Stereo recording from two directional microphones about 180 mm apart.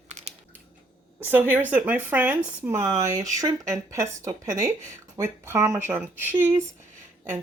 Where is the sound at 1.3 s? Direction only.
10° right (ahead or behind).